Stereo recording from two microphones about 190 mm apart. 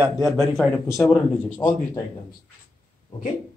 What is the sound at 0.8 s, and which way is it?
A man's voice, 15° left (ahead or behind).